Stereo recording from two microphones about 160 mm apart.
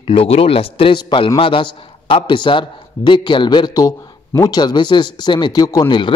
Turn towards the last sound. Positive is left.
turn(degrees=30)  # may be behind; listen again after turning